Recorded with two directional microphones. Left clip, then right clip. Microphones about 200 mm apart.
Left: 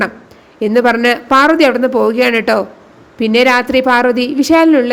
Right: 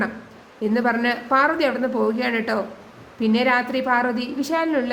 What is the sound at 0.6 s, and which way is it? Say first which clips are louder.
A woman's voice: left 10 dB; 35° left (ahead or behind).